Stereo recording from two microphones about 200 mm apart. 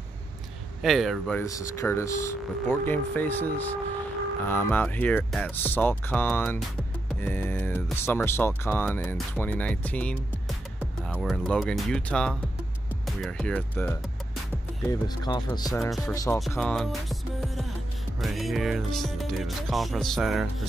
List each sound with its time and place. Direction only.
0.8 s music: centre (ahead or behind)
1.4 s speech: 15° left (ahead or behind)
11.1 s music: centre (ahead or behind)
13.0 s speech: centre (ahead or behind)
16.3 s music: centre (ahead or behind)